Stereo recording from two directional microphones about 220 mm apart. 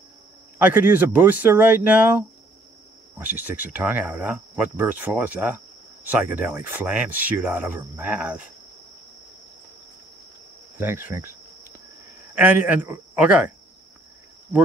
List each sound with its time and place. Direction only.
0.6 s speech: 10° right (ahead or behind)
3.3 s speech: 10° right (ahead or behind)
10.8 s speech: 10° right (ahead or behind)
12.4 s speech: 10° right (ahead or behind)